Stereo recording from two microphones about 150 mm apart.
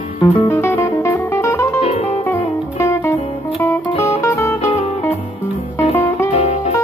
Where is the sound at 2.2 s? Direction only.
15° left (ahead or behind).